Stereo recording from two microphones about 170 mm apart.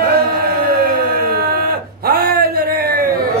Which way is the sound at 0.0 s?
65° right (ahead or behind).